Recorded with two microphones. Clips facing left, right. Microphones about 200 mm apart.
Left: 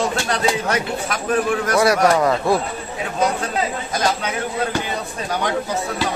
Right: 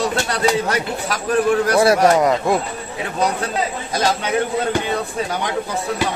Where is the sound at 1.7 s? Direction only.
30° right (ahead or behind).